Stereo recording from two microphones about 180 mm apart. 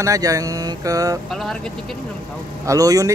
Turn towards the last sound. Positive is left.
turn(degrees=-20)  # may be behind; listen again after turning